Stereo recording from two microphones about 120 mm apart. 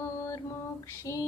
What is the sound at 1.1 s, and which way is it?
Music, 25° left (ahead or behind).